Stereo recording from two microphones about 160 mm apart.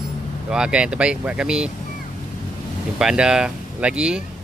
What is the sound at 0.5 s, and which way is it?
Speech, 5° right (ahead or behind).